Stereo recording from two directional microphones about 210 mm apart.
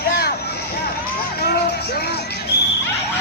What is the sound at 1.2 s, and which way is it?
Music, 50° left (ahead or behind).